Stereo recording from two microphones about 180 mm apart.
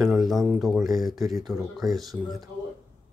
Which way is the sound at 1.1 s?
20° right (ahead or behind).